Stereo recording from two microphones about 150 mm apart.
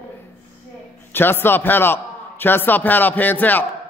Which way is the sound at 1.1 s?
15° left (ahead or behind).